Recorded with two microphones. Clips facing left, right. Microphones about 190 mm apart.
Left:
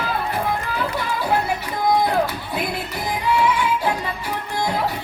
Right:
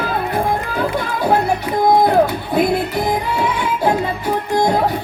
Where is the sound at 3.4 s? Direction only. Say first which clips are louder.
Right 1 dB; 50° right (ahead or behind).